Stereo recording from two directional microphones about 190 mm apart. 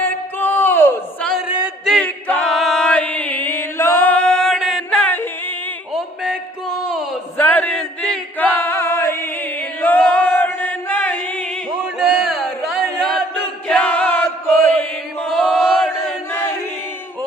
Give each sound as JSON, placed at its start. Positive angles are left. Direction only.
{"t": 0.0, "sound": "a sound", "side_deg": 10}
{"t": 2.0, "sound": "chant", "side_deg": 10}
{"t": 7.3, "sound": "chant", "side_deg": 10}
{"t": 11.9, "sound": "a sound", "side_deg": 0}
{"t": 13.0, "sound": "chant", "side_deg": 5}
{"t": 16.3, "sound": "choir", "side_deg": 10}